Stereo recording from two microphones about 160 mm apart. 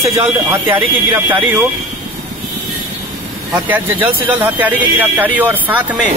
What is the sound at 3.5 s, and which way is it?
Speech, 10° right (ahead or behind).